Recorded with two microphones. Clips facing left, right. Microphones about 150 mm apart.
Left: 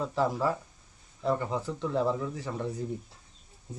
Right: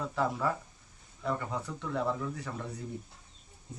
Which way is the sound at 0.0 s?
30° left (ahead or behind).